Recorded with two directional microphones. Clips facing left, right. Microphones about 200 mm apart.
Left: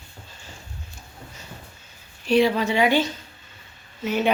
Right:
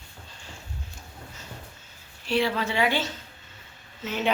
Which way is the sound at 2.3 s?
15° left (ahead or behind).